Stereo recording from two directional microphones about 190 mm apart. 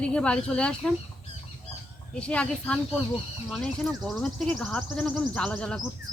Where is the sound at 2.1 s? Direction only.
5° left (ahead or behind).